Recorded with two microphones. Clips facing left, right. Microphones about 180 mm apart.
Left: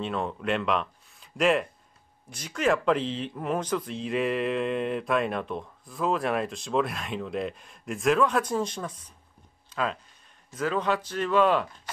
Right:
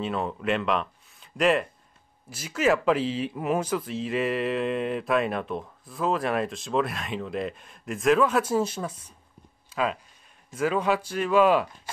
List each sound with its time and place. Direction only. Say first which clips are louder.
0.0 s speech: right 2 dB; centre (ahead or behind)
9.7 s a sound: right 2 dB; 5° right (ahead or behind)
10.5 s speech: right 2 dB; 10° right (ahead or behind)